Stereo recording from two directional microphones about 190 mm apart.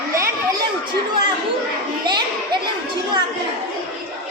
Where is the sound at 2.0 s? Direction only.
25° right (ahead or behind).